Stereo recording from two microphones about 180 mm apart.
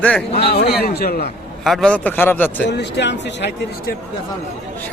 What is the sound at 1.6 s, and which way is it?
Speech, centre (ahead or behind).